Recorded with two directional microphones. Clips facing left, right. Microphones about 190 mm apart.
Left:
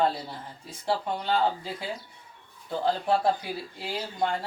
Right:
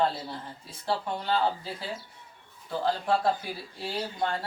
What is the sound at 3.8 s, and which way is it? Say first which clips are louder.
Speech: even; 15° left (ahead or behind).